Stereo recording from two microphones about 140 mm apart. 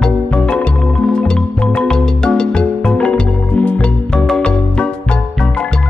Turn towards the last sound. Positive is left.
turn(degrees=5)  # may be behind; listen again after turning